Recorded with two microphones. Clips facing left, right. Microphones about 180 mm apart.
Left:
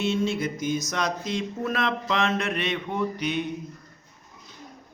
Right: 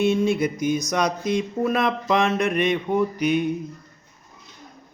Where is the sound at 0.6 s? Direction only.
15° right (ahead or behind).